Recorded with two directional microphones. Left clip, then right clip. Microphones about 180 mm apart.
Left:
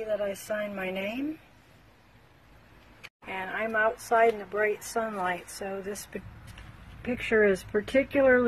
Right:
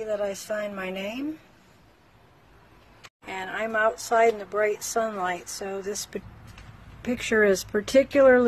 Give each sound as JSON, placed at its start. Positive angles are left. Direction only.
{"t": 0.0, "sound": "a woman's voice", "side_deg": -5}
{"t": 3.3, "sound": "speech", "side_deg": -5}